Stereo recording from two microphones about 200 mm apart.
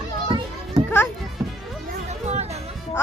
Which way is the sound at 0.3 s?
25° right (ahead or behind).